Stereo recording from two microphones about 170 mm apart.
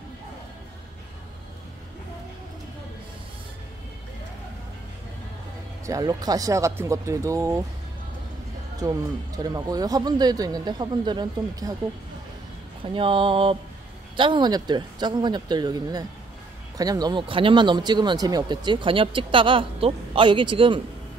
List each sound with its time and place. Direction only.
5.9 s speech: 20° right (ahead or behind)
9.4 s speech: 20° right (ahead or behind)
12.8 s speech: 30° right (ahead or behind)